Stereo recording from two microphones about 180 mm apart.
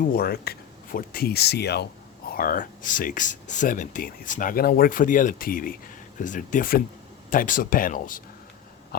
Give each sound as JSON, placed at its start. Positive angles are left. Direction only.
{"t": 0.0, "sound": "speech", "side_deg": 55}
{"t": 2.3, "sound": "speech", "side_deg": 55}